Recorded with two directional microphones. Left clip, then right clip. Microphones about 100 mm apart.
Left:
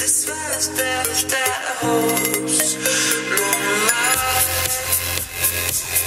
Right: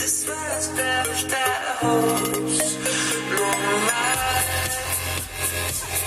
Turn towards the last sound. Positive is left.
turn(degrees=25)  # may be behind; listen again after turning